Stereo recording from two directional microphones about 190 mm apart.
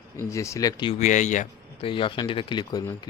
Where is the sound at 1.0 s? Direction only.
40° left (ahead or behind); by 3.0 s 20° left (ahead or behind).